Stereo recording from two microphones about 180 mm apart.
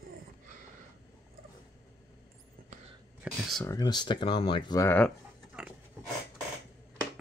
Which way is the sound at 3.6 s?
20° left (ahead or behind).